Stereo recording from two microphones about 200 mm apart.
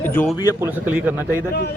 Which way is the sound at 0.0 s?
10° left (ahead or behind).